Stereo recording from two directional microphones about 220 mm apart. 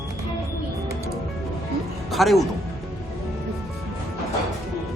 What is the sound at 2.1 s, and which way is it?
Speech, centre (ahead or behind).